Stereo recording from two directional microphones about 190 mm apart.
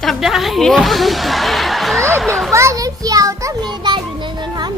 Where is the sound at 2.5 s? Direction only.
15° right (ahead or behind).